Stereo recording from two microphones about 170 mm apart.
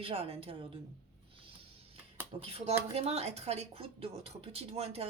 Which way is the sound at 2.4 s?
35° right (ahead or behind).